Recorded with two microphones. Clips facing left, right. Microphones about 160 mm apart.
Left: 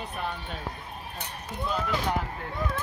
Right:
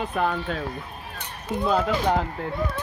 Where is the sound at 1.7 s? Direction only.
70° right (ahead or behind).